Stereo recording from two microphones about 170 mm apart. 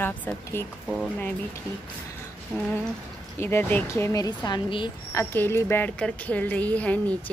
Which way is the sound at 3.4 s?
10° left (ahead or behind).